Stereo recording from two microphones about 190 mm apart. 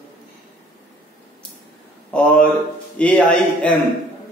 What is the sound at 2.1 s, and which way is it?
A man's voice, 5° left (ahead or behind).